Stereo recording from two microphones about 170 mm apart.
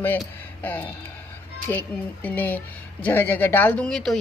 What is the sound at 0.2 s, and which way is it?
A woman's voice, 10° left (ahead or behind).